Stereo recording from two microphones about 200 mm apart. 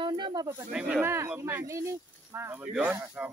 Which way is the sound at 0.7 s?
10° right (ahead or behind).